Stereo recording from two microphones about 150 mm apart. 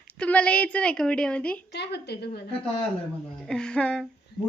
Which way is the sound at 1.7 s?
90° left.